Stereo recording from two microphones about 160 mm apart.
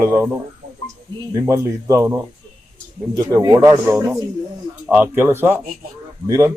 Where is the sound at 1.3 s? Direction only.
20° right (ahead or behind).